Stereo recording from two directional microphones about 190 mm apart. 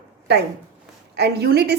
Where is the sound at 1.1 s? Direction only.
60° right (ahead or behind).